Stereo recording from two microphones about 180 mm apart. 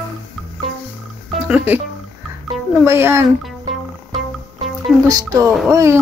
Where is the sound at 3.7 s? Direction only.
Centre (ahead or behind).